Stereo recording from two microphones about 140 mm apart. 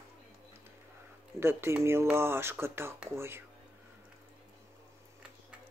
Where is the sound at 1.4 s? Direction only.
20° right (ahead or behind).